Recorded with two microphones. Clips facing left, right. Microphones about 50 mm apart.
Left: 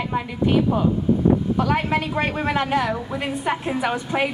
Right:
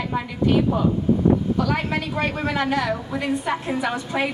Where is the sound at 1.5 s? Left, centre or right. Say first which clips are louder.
Left 2 dB; left.